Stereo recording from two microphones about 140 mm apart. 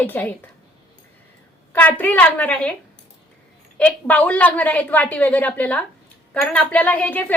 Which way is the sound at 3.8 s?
10° left (ahead or behind).